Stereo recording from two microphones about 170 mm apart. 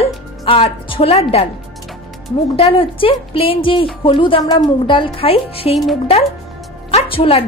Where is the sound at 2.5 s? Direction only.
30° left (ahead or behind).